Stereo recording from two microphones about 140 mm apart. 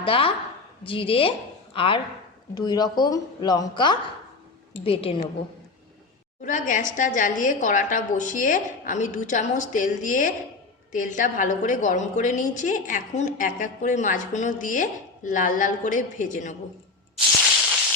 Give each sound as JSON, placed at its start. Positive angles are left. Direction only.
{"t": 0.0, "sound": "speech", "side_deg": 40}
{"t": 2.6, "sound": "a woman's voice", "side_deg": 30}
{"t": 6.4, "sound": "a woman's voice", "side_deg": 70}